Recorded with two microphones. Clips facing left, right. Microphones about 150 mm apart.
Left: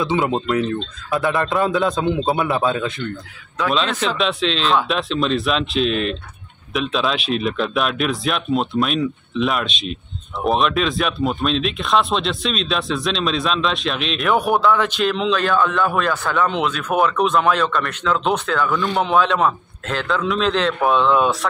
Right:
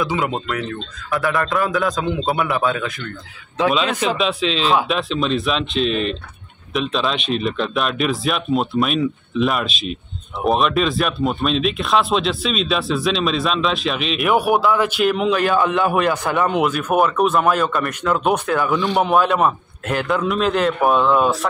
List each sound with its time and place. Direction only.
0.0 s speech: 25° left (ahead or behind)
3.7 s speech: 5° right (ahead or behind)